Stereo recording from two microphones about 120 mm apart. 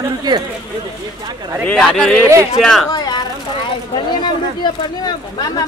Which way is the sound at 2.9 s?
35° left (ahead or behind).